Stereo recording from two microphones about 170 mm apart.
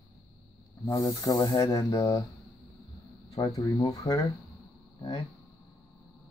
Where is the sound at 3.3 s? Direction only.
20° left (ahead or behind).